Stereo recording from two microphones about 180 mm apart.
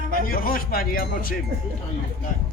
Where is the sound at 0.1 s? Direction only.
55° left (ahead or behind).